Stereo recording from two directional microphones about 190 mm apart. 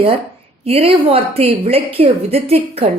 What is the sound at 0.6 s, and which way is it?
A woman's voice, 30° right (ahead or behind).